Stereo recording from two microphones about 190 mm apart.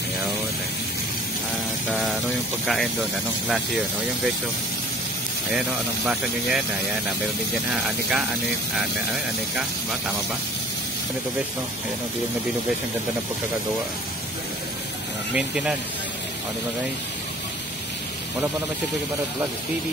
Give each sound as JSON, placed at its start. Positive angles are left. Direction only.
{"t": 1.9, "sound": "music", "side_deg": 0}
{"t": 2.6, "sound": "speech", "side_deg": 0}
{"t": 6.0, "sound": "speech", "side_deg": 0}
{"t": 15.3, "sound": "speech", "side_deg": -5}